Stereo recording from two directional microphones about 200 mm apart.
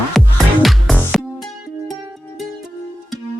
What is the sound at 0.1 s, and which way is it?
Music, centre (ahead or behind).